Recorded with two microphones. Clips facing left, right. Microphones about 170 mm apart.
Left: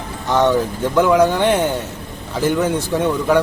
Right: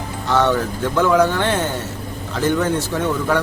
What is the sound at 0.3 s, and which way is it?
Speech, 15° left (ahead or behind).